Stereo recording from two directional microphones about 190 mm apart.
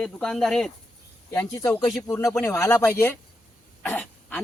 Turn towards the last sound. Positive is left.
turn(degrees=10)  # may be behind; listen again after turning